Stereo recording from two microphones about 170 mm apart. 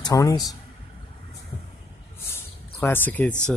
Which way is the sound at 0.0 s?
25° left (ahead or behind).